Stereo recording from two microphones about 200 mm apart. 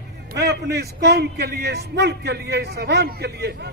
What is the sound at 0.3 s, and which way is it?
A man's voice, 55° right (ahead or behind).